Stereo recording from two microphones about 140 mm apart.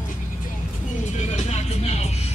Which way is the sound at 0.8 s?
60° left (ahead or behind).